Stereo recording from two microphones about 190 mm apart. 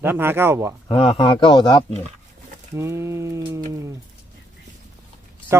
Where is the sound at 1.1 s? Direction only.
25° left (ahead or behind).